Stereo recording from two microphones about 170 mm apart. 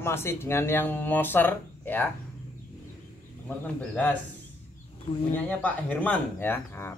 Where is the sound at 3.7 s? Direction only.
10° left (ahead or behind).